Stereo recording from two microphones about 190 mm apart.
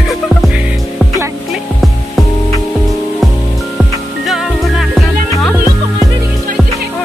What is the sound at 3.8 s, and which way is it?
Music, centre (ahead or behind).